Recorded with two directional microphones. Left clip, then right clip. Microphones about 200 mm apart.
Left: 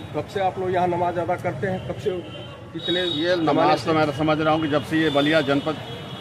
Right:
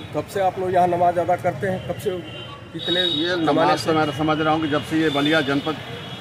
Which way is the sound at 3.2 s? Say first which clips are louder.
Left 2 dB; centre (ahead or behind).